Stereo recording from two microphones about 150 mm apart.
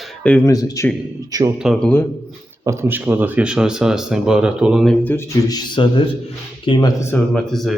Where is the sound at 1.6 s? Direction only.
Centre (ahead or behind).